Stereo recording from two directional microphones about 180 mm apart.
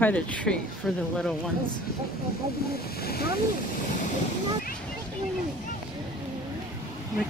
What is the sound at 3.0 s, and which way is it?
Speech, 60° left (ahead or behind).